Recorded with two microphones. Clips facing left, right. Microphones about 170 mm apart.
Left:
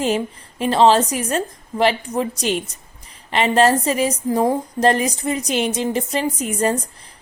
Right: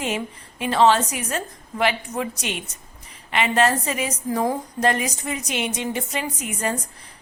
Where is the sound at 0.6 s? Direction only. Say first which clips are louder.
Left 3 dB; 35° left (ahead or behind).